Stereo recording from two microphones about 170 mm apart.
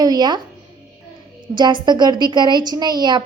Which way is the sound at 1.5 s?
25° right (ahead or behind).